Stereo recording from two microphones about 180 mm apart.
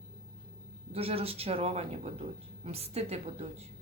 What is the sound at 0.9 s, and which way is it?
Speech, 35° right (ahead or behind).